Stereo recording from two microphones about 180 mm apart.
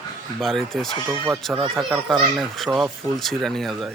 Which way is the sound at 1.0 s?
15° right (ahead or behind).